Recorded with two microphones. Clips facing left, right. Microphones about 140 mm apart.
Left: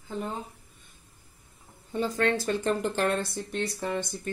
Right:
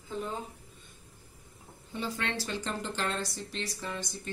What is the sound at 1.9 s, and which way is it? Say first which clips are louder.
Speech: left 8 dB; 45° left (ahead or behind).